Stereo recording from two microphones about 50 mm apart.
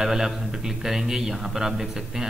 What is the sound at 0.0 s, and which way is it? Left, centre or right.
A man's voice, centre.